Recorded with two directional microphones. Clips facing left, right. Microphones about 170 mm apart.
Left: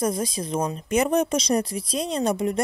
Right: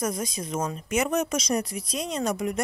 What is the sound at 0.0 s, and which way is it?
Speech, 30° left (ahead or behind).